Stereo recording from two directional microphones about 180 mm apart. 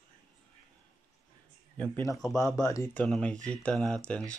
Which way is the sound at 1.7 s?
10° left (ahead or behind).